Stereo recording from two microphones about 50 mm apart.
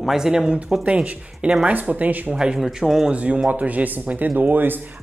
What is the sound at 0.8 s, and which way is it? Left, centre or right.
Speech, right.